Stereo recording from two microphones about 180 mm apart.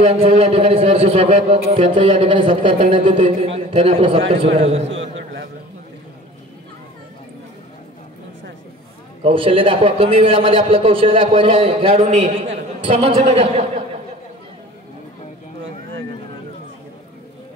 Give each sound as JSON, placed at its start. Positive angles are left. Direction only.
{"t": 0.0, "sound": "a man's voice", "side_deg": -30}
{"t": 4.8, "sound": "a man's voice", "side_deg": -90}
{"t": 9.2, "sound": "a man's voice", "side_deg": -30}
{"t": 11.9, "sound": "a man's voice", "side_deg": -40}
{"t": 12.8, "sound": "a man's voice", "side_deg": -30}